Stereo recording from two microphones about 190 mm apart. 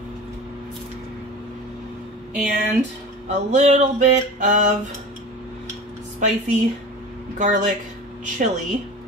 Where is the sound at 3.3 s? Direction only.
40° right (ahead or behind).